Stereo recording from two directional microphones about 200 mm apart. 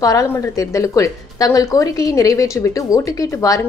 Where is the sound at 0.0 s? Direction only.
15° left (ahead or behind).